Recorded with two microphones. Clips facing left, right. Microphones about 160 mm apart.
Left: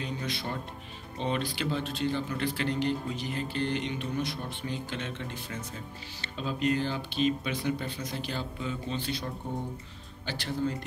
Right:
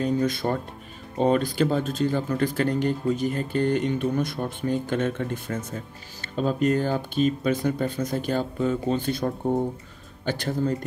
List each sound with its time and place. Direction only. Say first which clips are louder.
0.0 s speech: right 11 dB; 45° right (ahead or behind)